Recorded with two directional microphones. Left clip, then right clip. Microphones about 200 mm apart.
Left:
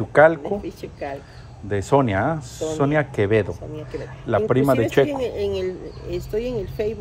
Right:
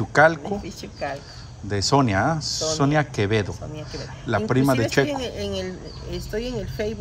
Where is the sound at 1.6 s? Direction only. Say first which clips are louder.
Left 1 dB; centre (ahead or behind).